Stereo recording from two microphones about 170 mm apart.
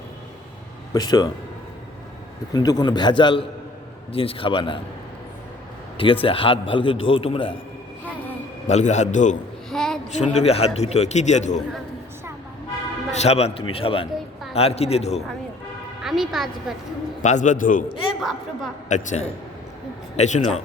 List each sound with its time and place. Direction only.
0.9 s a man's voice: 25° left (ahead or behind)
2.5 s a man's voice: 25° left (ahead or behind)
6.0 s a man's voice: 30° left (ahead or behind)
8.6 s a man's voice: 45° left (ahead or behind)
9.6 s a sound: 5° left (ahead or behind)
10.1 s a man's voice: 40° left (ahead or behind)
13.1 s a man's voice: 40° left (ahead or behind)
16.0 s a woman's voice: centre (ahead or behind)
17.2 s a man's voice: 45° left (ahead or behind)
18.2 s a woman's voice: centre (ahead or behind)
18.9 s a man's voice: 45° left (ahead or behind)